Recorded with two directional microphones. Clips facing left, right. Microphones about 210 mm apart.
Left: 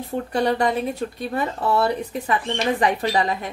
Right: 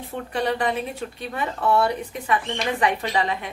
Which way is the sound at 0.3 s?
40° left (ahead or behind).